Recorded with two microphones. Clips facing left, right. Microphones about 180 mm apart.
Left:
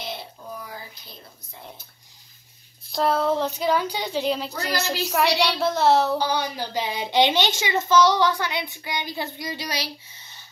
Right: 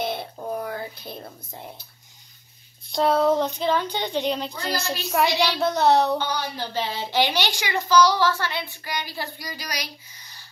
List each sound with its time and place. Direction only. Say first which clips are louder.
0.0 s a sound: right 7 dB; 55° right (ahead or behind)
2.9 s speech: right 2 dB; centre (ahead or behind)
6.4 s speech: left 1 dB; 15° left (ahead or behind)